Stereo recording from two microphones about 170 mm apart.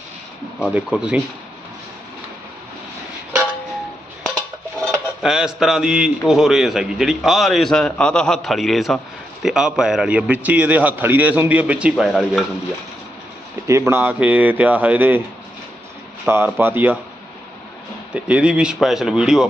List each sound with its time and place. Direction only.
0.6 s speech: 5° right (ahead or behind)
4.7 s speech: 5° right (ahead or behind)
13.7 s speech: 15° right (ahead or behind)
16.3 s speech: 10° right (ahead or behind)
18.1 s speech: 5° right (ahead or behind)